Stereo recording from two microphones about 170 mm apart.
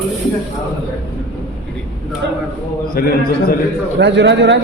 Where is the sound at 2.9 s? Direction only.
60° left (ahead or behind).